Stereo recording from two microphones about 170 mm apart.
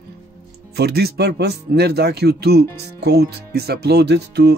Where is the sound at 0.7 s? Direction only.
70° right (ahead or behind).